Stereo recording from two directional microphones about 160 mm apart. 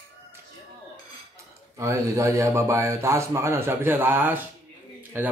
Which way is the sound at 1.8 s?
20° right (ahead or behind).